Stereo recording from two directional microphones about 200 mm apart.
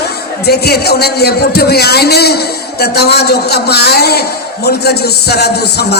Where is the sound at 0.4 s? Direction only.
55° left (ahead or behind).